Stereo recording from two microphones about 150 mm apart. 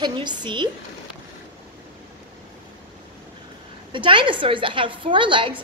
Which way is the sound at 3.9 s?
35° right (ahead or behind).